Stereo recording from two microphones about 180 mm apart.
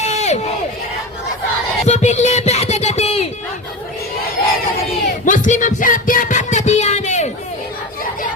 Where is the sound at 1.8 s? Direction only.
40° left (ahead or behind).